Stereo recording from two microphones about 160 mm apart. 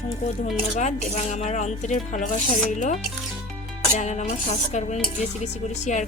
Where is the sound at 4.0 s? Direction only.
50° left (ahead or behind).